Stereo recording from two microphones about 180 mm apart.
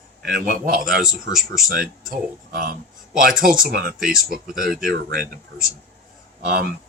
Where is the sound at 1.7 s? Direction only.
55° right (ahead or behind).